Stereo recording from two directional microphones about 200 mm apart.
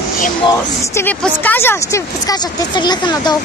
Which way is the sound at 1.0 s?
10° left (ahead or behind).